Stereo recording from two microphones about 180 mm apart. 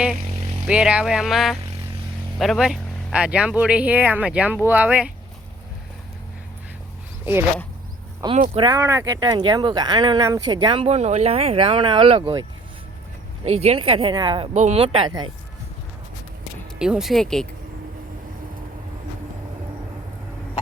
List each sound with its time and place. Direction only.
0.7 s speech: 5° right (ahead or behind)
8.2 s speech: 20° right (ahead or behind)
14.5 s speech: 40° right (ahead or behind)
16.7 s speech: 5° right (ahead or behind)